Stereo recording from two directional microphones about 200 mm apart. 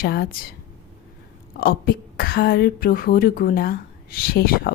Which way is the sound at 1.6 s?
45° left (ahead or behind).